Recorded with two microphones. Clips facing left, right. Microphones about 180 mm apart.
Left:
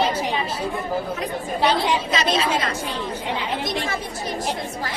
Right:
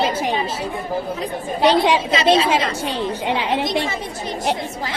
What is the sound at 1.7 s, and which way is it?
Speech, 90° right.